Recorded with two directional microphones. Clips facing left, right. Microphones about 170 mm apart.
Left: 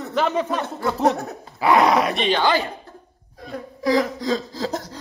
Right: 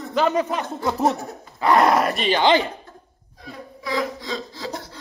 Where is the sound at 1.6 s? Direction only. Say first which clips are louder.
Even; centre (ahead or behind).